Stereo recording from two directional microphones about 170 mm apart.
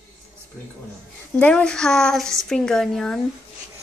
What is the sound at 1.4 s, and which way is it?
Speech, 5° left (ahead or behind).